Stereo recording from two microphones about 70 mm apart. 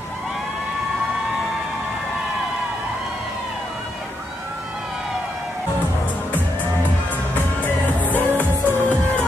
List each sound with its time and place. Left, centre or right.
7.6 s music: left